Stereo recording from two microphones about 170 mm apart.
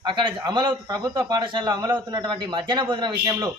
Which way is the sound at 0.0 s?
30° right (ahead or behind).